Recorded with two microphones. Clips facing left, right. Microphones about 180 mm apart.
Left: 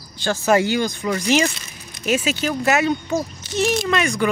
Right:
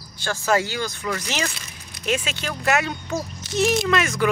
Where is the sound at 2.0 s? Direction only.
5° left (ahead or behind).